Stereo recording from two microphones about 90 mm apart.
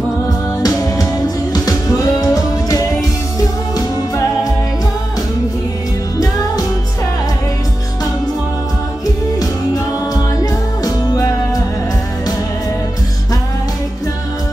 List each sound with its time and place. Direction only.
0.3 s music: 45° left (ahead or behind)
10.1 s music: 45° left (ahead or behind)